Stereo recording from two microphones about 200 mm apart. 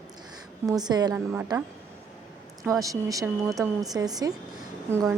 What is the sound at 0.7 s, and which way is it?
Speech, 20° right (ahead or behind).